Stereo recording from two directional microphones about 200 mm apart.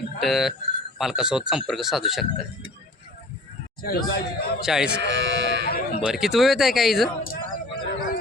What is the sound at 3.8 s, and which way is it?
Speech, 50° left (ahead or behind).